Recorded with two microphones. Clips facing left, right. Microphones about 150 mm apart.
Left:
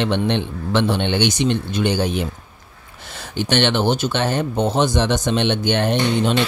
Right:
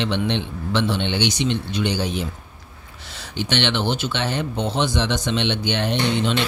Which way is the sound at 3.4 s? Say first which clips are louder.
Left 4 dB; 45° left (ahead or behind).